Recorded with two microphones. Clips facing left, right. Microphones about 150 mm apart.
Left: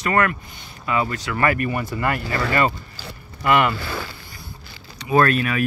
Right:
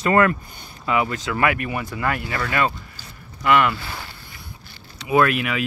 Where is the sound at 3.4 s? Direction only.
5° left (ahead or behind).